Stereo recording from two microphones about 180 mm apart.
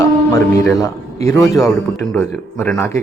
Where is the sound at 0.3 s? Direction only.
15° left (ahead or behind).